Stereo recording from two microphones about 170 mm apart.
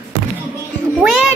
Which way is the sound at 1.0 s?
5° right (ahead or behind).